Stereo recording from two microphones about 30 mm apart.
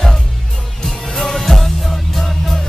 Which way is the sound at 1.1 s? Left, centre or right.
Centre.